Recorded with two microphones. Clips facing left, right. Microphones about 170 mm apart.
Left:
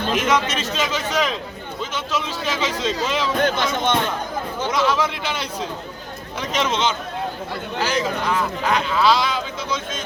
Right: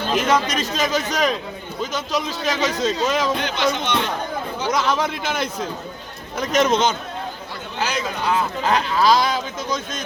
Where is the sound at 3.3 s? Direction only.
50° left (ahead or behind).